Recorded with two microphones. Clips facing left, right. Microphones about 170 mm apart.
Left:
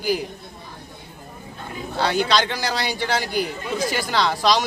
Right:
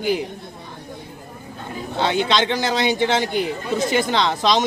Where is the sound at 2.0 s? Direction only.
20° right (ahead or behind).